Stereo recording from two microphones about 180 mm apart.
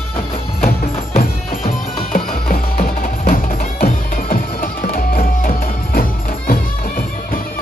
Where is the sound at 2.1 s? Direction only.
50° left (ahead or behind).